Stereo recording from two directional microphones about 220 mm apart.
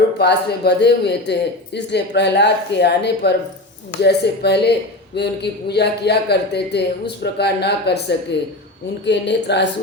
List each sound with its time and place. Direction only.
0.2 s speech: 50° left (ahead or behind)